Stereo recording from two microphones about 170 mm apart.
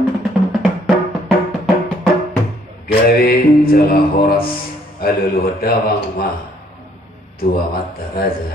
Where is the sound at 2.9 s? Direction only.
65° left (ahead or behind).